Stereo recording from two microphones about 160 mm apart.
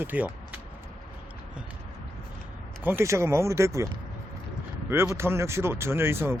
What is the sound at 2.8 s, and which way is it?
Speech, 15° right (ahead or behind).